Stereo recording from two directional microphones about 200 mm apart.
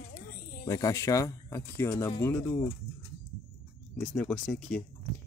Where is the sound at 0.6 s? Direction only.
15° left (ahead or behind).